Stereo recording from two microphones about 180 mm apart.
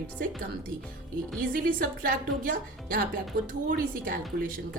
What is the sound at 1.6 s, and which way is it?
A woman's voice, 55° right (ahead or behind).